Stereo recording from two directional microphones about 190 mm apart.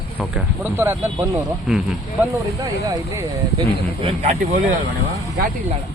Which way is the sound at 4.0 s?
35° right (ahead or behind).